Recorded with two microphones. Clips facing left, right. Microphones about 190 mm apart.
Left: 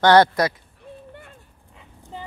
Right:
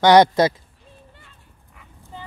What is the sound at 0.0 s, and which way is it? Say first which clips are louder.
Speech: right 2 dB; 15° right (ahead or behind).